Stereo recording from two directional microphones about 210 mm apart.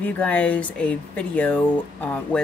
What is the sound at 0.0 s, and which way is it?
Speech, 5° left (ahead or behind).